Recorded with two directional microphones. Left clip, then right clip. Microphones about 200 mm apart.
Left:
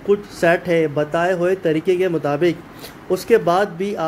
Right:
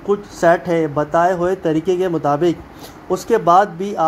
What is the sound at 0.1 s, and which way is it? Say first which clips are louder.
A man's voice: right 2 dB; 5° left (ahead or behind).